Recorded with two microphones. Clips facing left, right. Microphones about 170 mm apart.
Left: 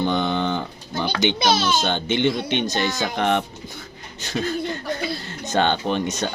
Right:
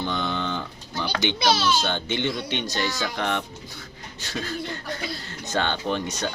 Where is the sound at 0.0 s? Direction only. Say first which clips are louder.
Left 6 dB; 55° left (ahead or behind).